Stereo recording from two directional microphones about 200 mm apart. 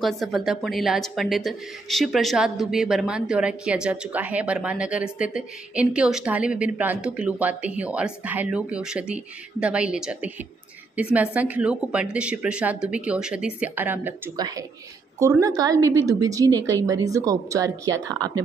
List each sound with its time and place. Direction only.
0.0 s a woman's voice: centre (ahead or behind); by 18.4 s 20° right (ahead or behind)